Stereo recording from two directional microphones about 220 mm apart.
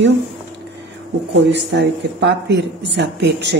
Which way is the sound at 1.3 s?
55° right (ahead or behind).